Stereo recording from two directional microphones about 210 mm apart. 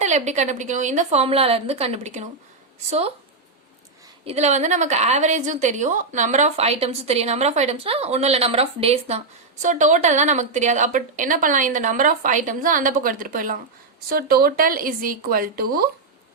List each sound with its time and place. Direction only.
0.0 s a woman's voice: 35° right (ahead or behind)
4.3 s a woman's voice: 30° right (ahead or behind)